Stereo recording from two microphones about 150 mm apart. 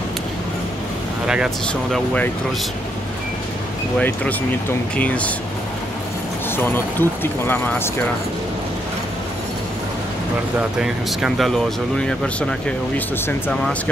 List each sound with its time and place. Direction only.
1.2 s speech: 5° right (ahead or behind)
1.7 s speech: 5° left (ahead or behind)
4.0 s speech: 10° left (ahead or behind)
6.5 s speech: 15° left (ahead or behind)
10.8 s speech: 5° right (ahead or behind)